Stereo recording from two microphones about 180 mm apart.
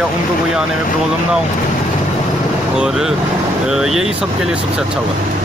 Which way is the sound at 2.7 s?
5° right (ahead or behind).